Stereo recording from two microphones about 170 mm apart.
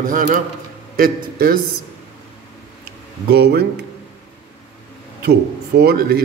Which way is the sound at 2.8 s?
70° right (ahead or behind).